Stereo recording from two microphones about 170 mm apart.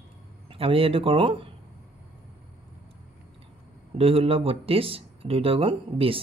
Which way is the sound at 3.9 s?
35° right (ahead or behind).